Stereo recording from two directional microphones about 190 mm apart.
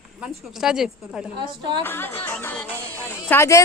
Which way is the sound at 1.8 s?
10° left (ahead or behind).